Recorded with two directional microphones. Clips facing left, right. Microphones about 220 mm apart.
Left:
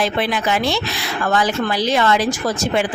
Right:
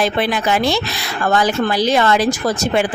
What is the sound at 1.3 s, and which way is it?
Speech, 40° right (ahead or behind).